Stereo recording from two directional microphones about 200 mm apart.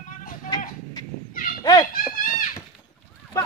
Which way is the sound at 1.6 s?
20° left (ahead or behind).